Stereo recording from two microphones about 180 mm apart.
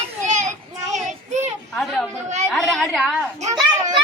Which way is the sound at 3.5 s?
20° right (ahead or behind).